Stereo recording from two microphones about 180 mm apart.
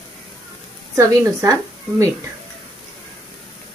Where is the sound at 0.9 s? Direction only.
15° right (ahead or behind).